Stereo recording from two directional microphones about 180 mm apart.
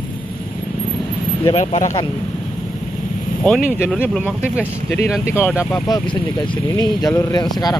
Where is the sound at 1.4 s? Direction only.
35° left (ahead or behind).